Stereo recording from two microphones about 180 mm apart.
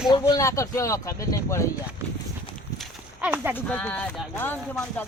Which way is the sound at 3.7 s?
5° left (ahead or behind).